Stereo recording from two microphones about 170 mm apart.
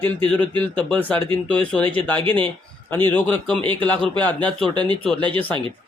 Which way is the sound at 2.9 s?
10° left (ahead or behind).